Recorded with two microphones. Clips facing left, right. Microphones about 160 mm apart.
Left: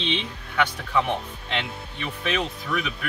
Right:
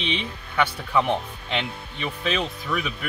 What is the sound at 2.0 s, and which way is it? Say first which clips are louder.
Speech: right 1 dB; 15° right (ahead or behind).